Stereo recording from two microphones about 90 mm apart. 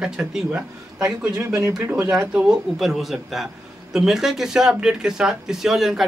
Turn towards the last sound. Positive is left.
turn(degrees=-5)  # may be behind; listen again after turning